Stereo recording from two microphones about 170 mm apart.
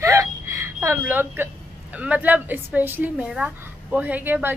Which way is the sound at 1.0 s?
10° right (ahead or behind).